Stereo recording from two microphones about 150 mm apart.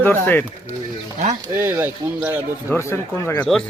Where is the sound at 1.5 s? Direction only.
15° right (ahead or behind).